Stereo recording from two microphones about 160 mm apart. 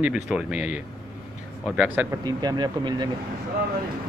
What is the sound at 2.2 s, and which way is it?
Speech, 25° right (ahead or behind).